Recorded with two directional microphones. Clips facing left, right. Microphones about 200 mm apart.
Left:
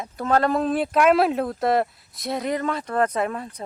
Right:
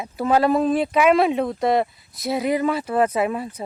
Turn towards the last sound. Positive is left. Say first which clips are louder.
# right 3 dB
turn(degrees=-5)  # may be behind; listen again after turning